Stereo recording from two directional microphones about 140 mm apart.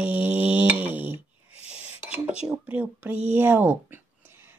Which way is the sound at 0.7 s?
10° right (ahead or behind).